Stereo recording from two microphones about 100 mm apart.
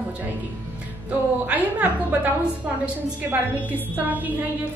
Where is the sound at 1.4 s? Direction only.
15° right (ahead or behind).